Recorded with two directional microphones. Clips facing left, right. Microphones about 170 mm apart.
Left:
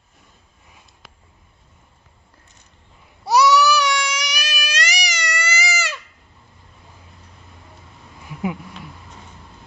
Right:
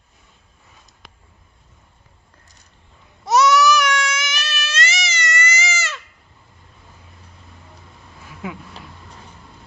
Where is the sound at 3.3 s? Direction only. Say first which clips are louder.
Even; 20° right (ahead or behind).